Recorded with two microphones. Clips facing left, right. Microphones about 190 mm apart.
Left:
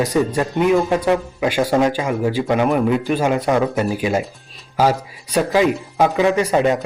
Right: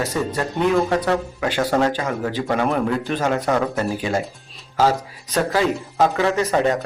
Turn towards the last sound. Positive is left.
turn(degrees=15)  # may be behind; listen again after turning